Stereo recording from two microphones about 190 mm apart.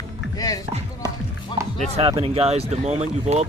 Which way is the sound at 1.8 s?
35° right (ahead or behind).